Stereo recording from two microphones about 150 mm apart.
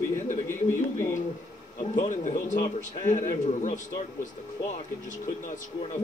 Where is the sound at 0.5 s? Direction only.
15° left (ahead or behind).